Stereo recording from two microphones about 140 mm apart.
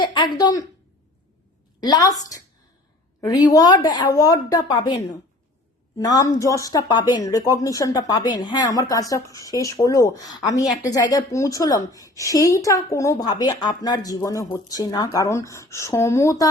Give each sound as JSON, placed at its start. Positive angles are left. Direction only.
{"t": 0.0, "sound": "speech", "side_deg": 30}
{"t": 1.8, "sound": "a woman's voice", "side_deg": 25}